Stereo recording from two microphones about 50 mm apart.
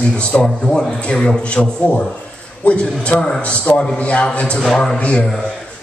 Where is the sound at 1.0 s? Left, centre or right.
Left.